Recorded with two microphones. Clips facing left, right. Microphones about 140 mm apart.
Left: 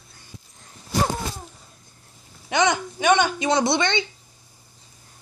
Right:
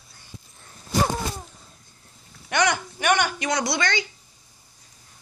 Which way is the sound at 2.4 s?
20° left (ahead or behind).